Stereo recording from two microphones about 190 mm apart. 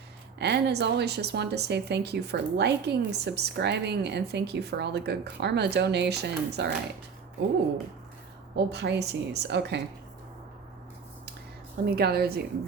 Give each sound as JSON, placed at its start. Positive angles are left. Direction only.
{"t": 0.3, "sound": "a woman's voice", "side_deg": -60}
{"t": 8.5, "sound": "a woman's voice", "side_deg": -65}
{"t": 11.9, "sound": "a woman's voice", "side_deg": -55}